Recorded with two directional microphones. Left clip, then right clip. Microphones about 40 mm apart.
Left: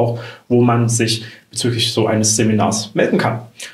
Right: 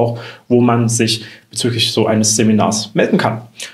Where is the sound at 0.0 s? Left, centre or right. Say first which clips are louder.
Right 2 dB; right.